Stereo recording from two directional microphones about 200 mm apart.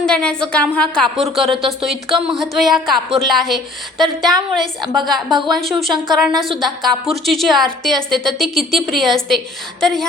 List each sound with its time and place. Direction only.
0.0 s a woman's voice: 5° left (ahead or behind)
4.8 s a woman's voice: 20° right (ahead or behind)
5.0 s a woman's voice: centre (ahead or behind)